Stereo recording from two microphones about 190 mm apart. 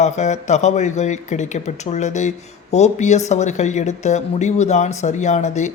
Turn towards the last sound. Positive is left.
turn(degrees=40)  # may be behind; listen again after turning